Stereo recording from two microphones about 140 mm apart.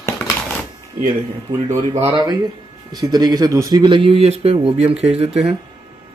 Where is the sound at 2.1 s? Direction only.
30° right (ahead or behind); by 5.3 s 45° right (ahead or behind).